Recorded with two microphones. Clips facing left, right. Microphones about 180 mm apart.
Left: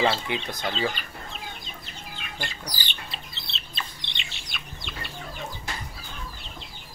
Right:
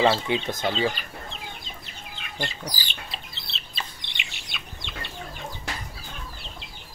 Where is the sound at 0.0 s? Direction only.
20° right (ahead or behind).